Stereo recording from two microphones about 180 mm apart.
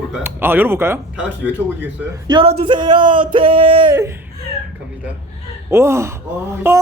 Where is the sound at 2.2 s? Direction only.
30° right (ahead or behind).